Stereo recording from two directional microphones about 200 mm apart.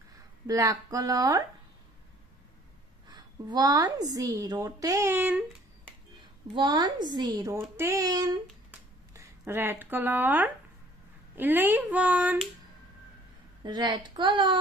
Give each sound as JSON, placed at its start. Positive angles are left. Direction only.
{"t": 0.5, "sound": "a woman's voice", "side_deg": -15}
{"t": 3.1, "sound": "a woman's voice", "side_deg": -20}
{"t": 6.5, "sound": "a woman's voice", "side_deg": -20}
{"t": 13.7, "sound": "speech", "side_deg": -20}